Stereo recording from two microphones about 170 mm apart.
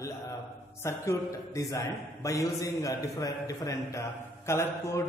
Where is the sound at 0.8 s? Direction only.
15° left (ahead or behind).